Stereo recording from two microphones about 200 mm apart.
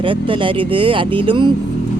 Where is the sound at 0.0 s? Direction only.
25° right (ahead or behind).